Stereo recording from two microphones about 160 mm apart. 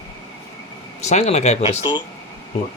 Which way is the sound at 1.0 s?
45° left (ahead or behind).